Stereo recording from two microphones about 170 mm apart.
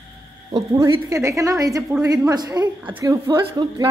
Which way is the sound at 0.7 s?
20° right (ahead or behind).